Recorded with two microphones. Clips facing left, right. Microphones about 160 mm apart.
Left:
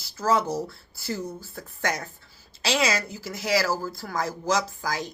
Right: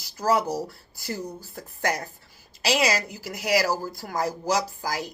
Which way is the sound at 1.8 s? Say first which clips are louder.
Right 2 dB; 35° right (ahead or behind).